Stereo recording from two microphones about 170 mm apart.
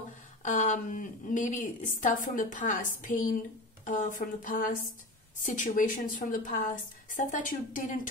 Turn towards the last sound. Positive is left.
turn(degrees=50)  # may be behind; listen again after turning